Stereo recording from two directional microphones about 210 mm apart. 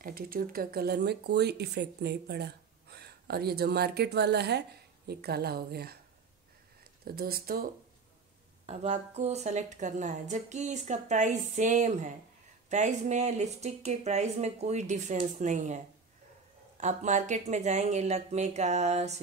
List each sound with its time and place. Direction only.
0.0 s speech: 45° right (ahead or behind)
8.6 s a woman's voice: 35° right (ahead or behind)